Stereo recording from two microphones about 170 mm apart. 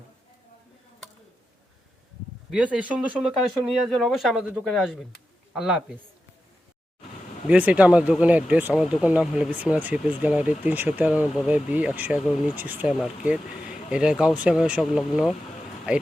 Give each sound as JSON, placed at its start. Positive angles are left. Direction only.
{"t": 2.5, "sound": "speech", "side_deg": -5}
{"t": 7.4, "sound": "speech", "side_deg": -10}